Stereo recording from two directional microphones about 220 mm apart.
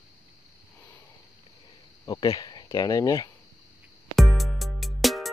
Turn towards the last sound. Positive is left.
turn(degrees=0)  # may be behind; listen again after turning